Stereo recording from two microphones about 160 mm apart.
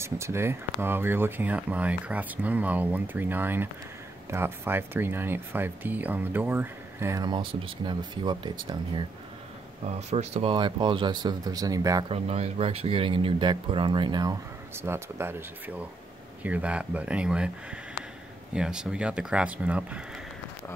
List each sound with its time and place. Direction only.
0.0 s speech: 15° right (ahead or behind)
7.2 s speech: 30° right (ahead or behind)
9.8 s speech: 45° right (ahead or behind); by 12.1 s 20° right (ahead or behind)
12.1 s speech: 40° right (ahead or behind)
14.8 s speech: 15° right (ahead or behind)